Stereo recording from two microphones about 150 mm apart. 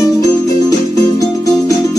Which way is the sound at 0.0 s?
25° left (ahead or behind).